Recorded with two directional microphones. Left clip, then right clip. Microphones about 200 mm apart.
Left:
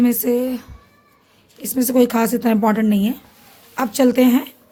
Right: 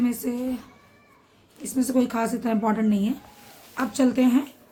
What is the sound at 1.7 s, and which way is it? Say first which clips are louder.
A woman's voice: left 8 dB; 50° left (ahead or behind).